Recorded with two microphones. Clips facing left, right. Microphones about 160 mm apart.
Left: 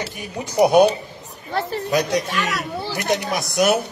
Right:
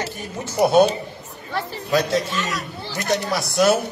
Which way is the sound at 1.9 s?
15° left (ahead or behind).